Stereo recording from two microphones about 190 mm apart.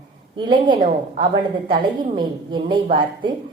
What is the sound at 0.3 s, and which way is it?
A woman's voice, 25° right (ahead or behind).